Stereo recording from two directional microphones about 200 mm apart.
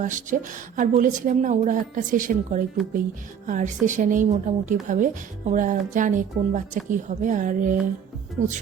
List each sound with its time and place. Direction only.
0.0 s a woman's voice: 40° right (ahead or behind)